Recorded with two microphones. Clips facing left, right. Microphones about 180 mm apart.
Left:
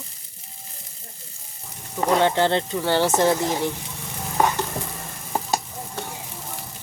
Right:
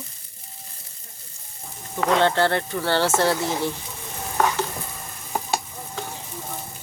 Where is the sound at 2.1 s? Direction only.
15° left (ahead or behind).